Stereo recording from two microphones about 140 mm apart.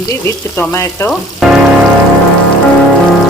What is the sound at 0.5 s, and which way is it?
Speech, 15° left (ahead or behind).